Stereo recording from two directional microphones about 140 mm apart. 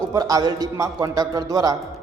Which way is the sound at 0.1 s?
25° right (ahead or behind).